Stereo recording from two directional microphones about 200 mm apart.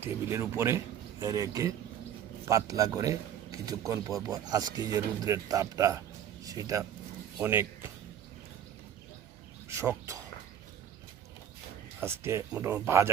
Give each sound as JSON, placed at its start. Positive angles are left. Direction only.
{"t": 0.0, "sound": "speech", "side_deg": -15}
{"t": 9.6, "sound": "a sound", "side_deg": -15}
{"t": 11.9, "sound": "speech", "side_deg": -10}